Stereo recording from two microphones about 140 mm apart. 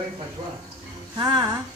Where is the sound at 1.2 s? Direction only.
30° right (ahead or behind).